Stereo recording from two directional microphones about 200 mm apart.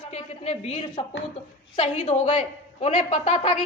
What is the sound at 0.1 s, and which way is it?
A woman's voice, 30° left (ahead or behind).